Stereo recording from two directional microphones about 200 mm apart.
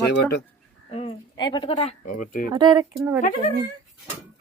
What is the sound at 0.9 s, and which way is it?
A woman's voice, 30° left (ahead or behind).